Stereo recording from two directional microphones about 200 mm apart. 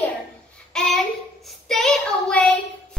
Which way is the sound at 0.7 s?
5° left (ahead or behind).